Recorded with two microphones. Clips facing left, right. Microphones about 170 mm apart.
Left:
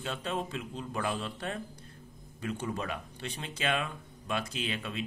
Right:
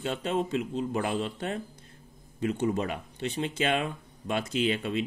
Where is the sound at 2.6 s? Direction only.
25° right (ahead or behind).